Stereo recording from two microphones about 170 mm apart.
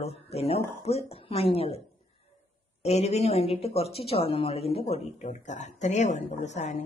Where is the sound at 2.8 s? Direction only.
40° left (ahead or behind).